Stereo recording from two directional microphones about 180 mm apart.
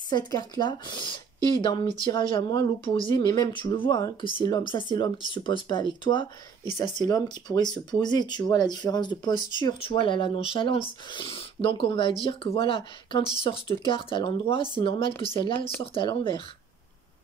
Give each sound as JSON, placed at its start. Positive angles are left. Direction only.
{"t": 0.1, "sound": "speech", "side_deg": 25}